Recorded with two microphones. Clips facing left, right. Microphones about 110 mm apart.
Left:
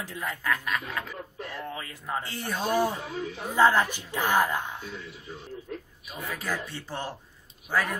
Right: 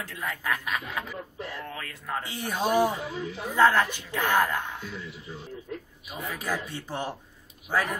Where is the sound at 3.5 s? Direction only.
15° left (ahead or behind).